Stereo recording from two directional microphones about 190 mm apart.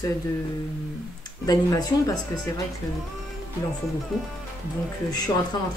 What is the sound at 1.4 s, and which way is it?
Speech, 20° left (ahead or behind).